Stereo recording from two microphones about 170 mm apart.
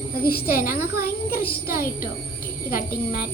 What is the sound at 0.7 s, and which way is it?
A woman's voice, 65° left (ahead or behind).